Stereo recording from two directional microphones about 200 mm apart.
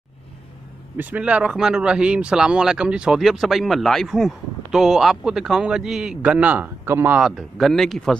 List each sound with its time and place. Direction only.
0.9 s a man's voice: 5° right (ahead or behind)